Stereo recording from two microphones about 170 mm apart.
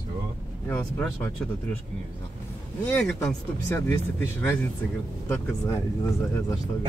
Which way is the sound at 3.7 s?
15° left (ahead or behind).